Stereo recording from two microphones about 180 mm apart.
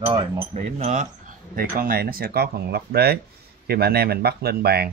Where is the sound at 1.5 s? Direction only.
55° right (ahead or behind).